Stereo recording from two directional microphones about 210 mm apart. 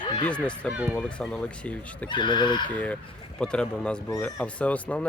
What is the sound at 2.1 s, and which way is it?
Speech, 20° left (ahead or behind).